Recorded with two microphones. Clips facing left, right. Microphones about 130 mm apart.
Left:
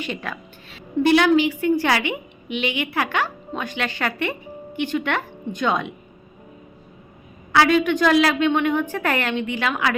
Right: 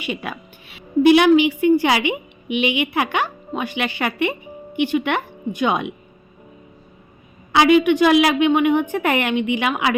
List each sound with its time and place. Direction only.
0.0 s a woman's voice: 10° right (ahead or behind)
7.5 s a woman's voice: 15° right (ahead or behind)